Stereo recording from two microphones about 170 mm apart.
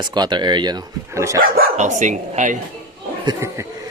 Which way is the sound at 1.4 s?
50° right (ahead or behind).